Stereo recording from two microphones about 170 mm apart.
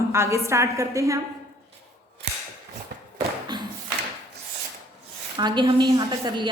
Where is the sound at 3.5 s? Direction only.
25° right (ahead or behind).